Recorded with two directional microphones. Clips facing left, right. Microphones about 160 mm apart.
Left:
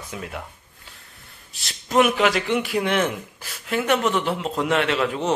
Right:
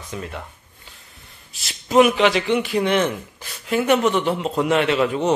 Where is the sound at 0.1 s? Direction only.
5° left (ahead or behind).